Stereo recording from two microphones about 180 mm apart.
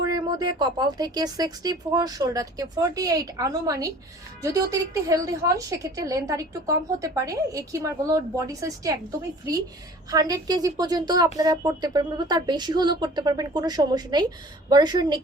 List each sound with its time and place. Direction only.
0.0 s a woman's voice: 20° right (ahead or behind)
10.1 s a woman's voice: 20° right (ahead or behind)